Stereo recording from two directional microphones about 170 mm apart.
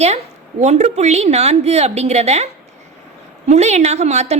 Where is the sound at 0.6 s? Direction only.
40° right (ahead or behind).